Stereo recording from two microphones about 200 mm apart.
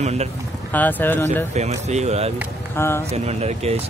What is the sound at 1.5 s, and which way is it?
Speech, 35° right (ahead or behind).